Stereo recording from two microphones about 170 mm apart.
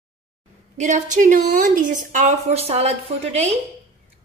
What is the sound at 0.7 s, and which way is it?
A woman's voice, 45° right (ahead or behind).